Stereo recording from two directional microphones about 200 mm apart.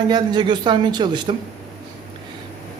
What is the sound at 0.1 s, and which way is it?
Speech, 25° right (ahead or behind).